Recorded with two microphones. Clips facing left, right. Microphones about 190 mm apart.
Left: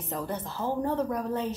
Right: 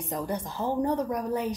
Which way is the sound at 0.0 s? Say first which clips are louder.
Right 2 dB; 15° right (ahead or behind).